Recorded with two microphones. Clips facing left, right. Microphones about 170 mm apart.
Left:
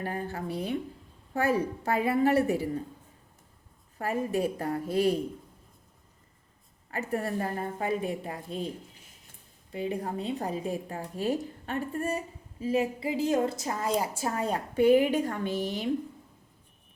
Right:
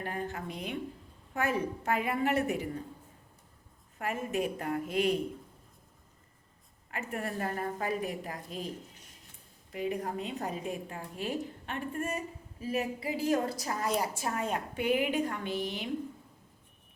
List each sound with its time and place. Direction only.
0.0 s a woman's voice: 35° left (ahead or behind)
3.9 s a woman's voice: 35° left (ahead or behind)
6.9 s a woman's voice: 30° left (ahead or behind)
9.7 s a woman's voice: 30° left (ahead or behind)